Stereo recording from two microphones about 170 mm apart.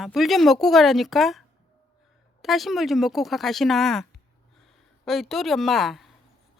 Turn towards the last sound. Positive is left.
turn(degrees=0)  # may be behind; listen again after turning